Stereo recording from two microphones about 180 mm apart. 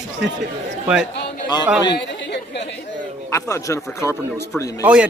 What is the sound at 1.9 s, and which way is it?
Chatter, 70° left (ahead or behind).